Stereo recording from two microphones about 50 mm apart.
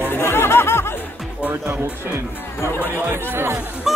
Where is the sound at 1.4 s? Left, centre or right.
Right.